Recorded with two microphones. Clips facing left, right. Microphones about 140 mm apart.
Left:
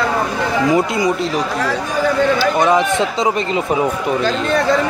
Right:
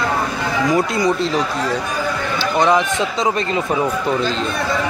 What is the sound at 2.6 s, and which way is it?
Speech, 10° left (ahead or behind).